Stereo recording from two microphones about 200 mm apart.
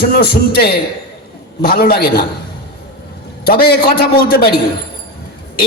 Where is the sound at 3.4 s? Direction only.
50° left (ahead or behind).